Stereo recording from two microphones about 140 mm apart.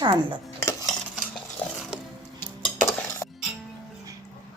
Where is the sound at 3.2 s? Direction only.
25° left (ahead or behind).